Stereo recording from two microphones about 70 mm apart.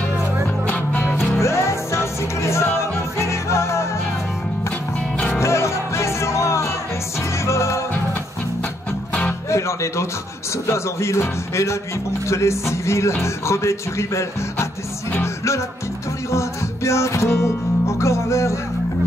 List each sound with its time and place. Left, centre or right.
0.7 s music: left
1.4 s music: left
5.4 s music: left
9.5 s music: left
10.7 s speech: left
16.3 s speech: left